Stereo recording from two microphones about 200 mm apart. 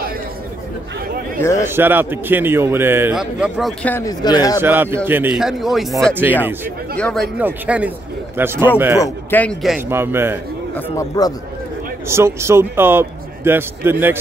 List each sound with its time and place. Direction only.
1.4 s a man's voice: 15° left (ahead or behind)
1.7 s a man's voice: 10° right (ahead or behind)
3.9 s speech: 15° left (ahead or behind)
4.6 s a man's voice: 10° right (ahead or behind)
7.0 s a man's voice: 5° left (ahead or behind)
7.3 s a man's voice: 5° right (ahead or behind)
9.0 s a man's voice: 10° left (ahead or behind); by 10.4 s 10° right (ahead or behind)
11.0 s speech: 20° left (ahead or behind)
12.1 s a man's voice: 15° right (ahead or behind)